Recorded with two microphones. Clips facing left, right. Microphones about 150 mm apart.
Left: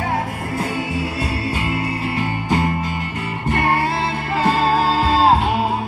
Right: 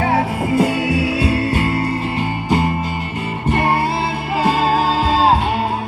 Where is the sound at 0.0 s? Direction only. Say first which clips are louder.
Right 6 dB; 80° right.